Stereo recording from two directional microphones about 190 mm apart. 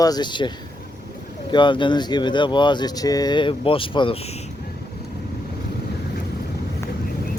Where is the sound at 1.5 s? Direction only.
25° left (ahead or behind).